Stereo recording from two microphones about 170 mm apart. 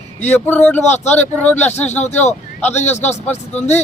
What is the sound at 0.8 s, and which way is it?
Speech, 40° left (ahead or behind).